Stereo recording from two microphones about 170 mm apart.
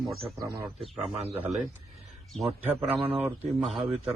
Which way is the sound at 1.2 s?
40° right (ahead or behind).